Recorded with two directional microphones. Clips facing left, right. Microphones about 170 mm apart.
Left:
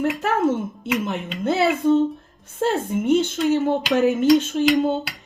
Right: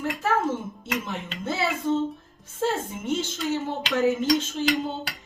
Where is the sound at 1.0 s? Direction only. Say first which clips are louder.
Left 7 dB; 65° left (ahead or behind).